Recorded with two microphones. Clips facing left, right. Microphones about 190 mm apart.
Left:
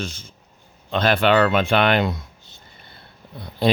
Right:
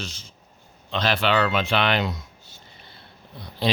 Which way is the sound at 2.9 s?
55° left (ahead or behind).